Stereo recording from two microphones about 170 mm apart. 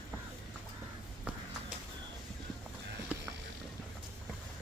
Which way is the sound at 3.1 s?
10° right (ahead or behind).